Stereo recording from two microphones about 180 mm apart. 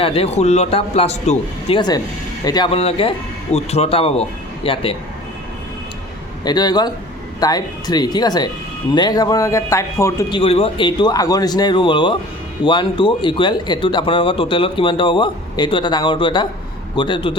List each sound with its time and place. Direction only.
0.0 s a man's voice: 30° left (ahead or behind)
2.4 s a man's voice: 25° left (ahead or behind)
6.4 s speech: 20° left (ahead or behind)
10.4 s speech: 30° left (ahead or behind)